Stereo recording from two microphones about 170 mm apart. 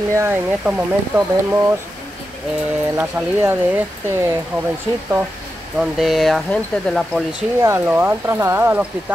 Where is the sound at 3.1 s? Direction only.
5° right (ahead or behind).